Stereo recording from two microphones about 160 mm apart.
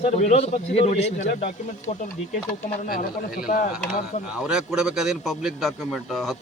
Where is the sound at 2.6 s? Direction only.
60° left (ahead or behind).